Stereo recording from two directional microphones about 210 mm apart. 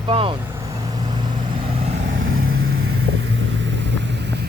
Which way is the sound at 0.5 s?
15° right (ahead or behind).